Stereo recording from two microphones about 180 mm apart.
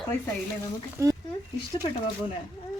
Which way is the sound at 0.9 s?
20° right (ahead or behind).